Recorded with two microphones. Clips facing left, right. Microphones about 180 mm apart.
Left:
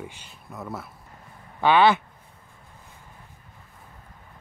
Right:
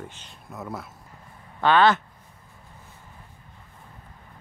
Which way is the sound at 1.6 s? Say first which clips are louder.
Left 1 dB; 10° left (ahead or behind).